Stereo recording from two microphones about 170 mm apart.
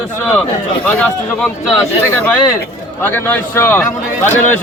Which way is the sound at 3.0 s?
10° left (ahead or behind).